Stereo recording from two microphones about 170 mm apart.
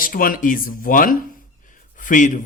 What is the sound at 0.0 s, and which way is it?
Speech, 55° left (ahead or behind).